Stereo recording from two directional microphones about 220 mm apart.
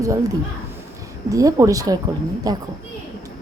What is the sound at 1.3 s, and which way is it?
Speech, 15° right (ahead or behind).